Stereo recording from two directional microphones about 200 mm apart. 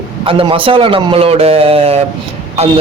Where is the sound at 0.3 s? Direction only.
25° right (ahead or behind).